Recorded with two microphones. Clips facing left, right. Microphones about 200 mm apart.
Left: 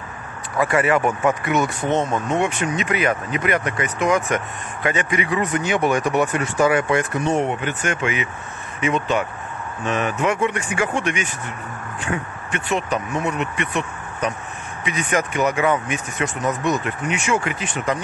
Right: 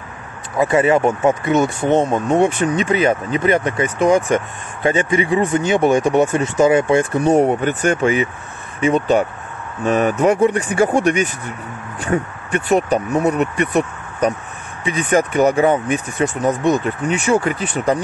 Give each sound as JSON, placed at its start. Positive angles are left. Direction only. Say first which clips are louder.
{"t": 0.6, "sound": "speech", "louder": "right 4 dB", "side_deg": -25}